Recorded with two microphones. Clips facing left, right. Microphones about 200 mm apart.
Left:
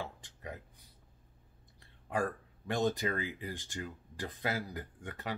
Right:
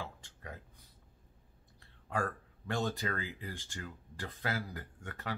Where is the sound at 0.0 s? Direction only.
15° left (ahead or behind).